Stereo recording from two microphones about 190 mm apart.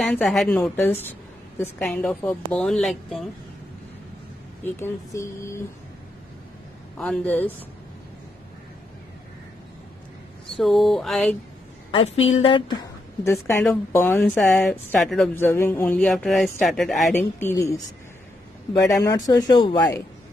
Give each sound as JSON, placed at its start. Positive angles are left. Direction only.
{"t": 0.0, "sound": "a woman's voice", "side_deg": 5}
{"t": 4.6, "sound": "a woman's voice", "side_deg": 10}
{"t": 7.0, "sound": "a woman's voice", "side_deg": 10}
{"t": 10.6, "sound": "a woman's voice", "side_deg": 0}
{"t": 11.9, "sound": "a woman's voice", "side_deg": 30}
{"t": 17.1, "sound": "a woman's voice", "side_deg": 10}